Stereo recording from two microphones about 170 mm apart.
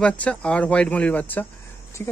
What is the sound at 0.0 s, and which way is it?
Speech, 5° left (ahead or behind).